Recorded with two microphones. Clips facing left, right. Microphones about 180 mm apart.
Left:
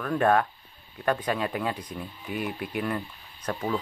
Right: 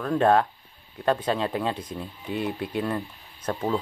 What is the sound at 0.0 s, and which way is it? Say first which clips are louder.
Speech: right 2 dB; 25° right (ahead or behind).